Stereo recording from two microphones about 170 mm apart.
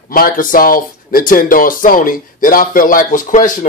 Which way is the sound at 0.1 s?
55° left (ahead or behind).